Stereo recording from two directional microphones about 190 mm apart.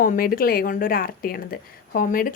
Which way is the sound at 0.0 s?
50° left (ahead or behind).